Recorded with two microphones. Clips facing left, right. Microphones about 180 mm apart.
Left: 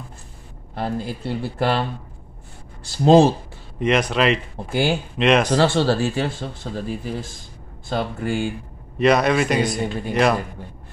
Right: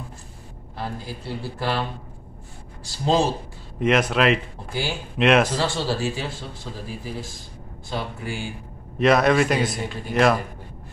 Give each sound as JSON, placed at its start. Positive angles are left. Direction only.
{"t": 0.7, "sound": "speech", "side_deg": 55}
{"t": 3.8, "sound": "a man's voice", "side_deg": 0}
{"t": 5.5, "sound": "speech", "side_deg": 65}
{"t": 8.9, "sound": "a man's voice", "side_deg": 0}